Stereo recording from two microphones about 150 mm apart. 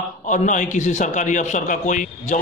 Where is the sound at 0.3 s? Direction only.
55° left (ahead or behind).